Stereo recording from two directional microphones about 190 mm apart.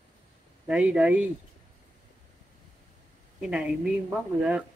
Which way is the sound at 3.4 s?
5° right (ahead or behind).